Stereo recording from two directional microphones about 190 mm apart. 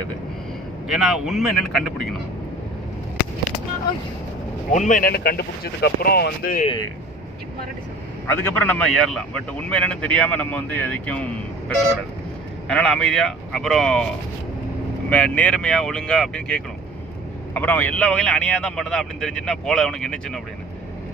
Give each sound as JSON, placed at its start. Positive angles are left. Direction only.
{"t": 0.8, "sound": "speech", "side_deg": 0}
{"t": 4.7, "sound": "a man's voice", "side_deg": 45}
{"t": 8.3, "sound": "a man's voice", "side_deg": 10}
{"t": 12.6, "sound": "speech", "side_deg": 5}